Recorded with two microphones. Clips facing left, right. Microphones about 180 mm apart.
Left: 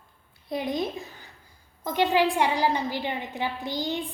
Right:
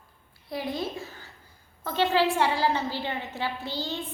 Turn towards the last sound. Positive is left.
turn(degrees=15)  # may be behind; listen again after turning